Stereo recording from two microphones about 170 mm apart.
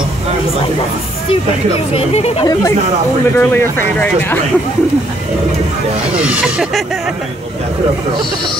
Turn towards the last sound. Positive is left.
turn(degrees=-5)  # may be behind; listen again after turning